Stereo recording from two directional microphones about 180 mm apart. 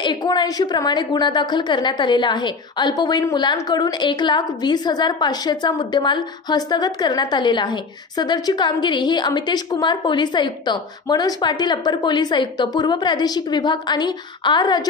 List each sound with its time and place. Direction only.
0.0 s a woman's voice: 25° left (ahead or behind)